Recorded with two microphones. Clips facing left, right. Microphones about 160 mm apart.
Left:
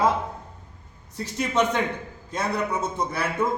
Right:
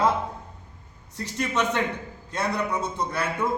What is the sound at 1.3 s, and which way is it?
A man's voice, 10° left (ahead or behind).